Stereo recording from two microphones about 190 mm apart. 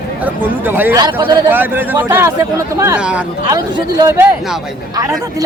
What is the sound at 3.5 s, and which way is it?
Speech, 20° right (ahead or behind).